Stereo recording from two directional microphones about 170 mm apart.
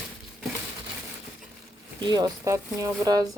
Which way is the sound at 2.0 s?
25° right (ahead or behind).